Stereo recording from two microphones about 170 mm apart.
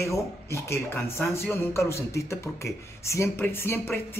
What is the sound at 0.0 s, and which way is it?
Speech, 15° left (ahead or behind).